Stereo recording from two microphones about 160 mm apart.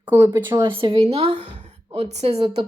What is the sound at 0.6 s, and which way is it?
A woman's voice, 35° right (ahead or behind).